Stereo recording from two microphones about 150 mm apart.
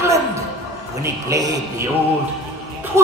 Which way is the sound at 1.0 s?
25° right (ahead or behind).